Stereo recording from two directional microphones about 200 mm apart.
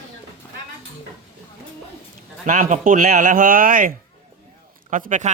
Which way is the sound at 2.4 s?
40° right (ahead or behind).